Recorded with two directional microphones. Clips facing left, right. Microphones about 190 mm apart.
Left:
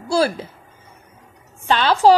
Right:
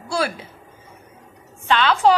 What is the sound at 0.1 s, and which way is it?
Speech, 35° left (ahead or behind).